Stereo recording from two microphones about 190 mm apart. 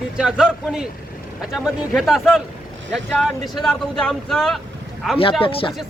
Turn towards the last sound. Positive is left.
turn(degrees=30)  # may be behind; listen again after turning